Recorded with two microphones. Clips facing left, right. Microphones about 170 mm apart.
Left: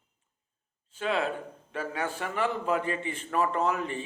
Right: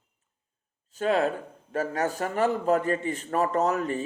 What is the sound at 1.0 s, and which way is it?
A man's voice, 45° right (ahead or behind).